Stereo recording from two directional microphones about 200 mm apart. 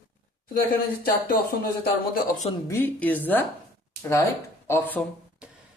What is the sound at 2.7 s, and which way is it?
Speech, 10° left (ahead or behind).